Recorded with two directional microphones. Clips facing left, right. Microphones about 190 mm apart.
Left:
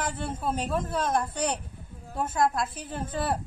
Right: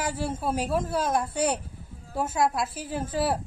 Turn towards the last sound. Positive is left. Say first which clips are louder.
# right 3 dB
turn(degrees=-5)  # may be behind; listen again after turning